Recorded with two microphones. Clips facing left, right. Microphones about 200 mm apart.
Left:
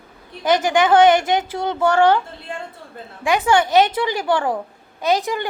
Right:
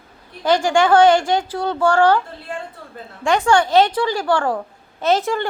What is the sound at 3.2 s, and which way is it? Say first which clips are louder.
A woman's voice: right 1 dB; 15° left (ahead or behind).